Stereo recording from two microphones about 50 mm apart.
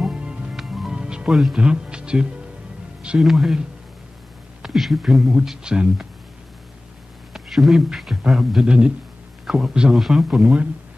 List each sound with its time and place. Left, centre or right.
0.0 s music: centre
0.6 s music: centre
1.3 s speech: centre
1.6 s speech: centre
3.2 s speech: centre
4.6 s speech: centre
7.3 s speech: centre
8.6 s speech: centre
9.5 s a man's voice: centre